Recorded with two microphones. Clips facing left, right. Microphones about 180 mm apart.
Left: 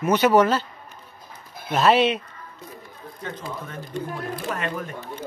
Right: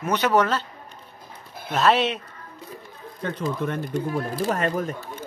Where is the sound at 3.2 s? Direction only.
55° right (ahead or behind).